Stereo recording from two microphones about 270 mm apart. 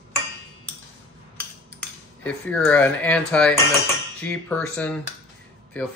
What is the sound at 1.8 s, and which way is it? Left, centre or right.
Speech, centre.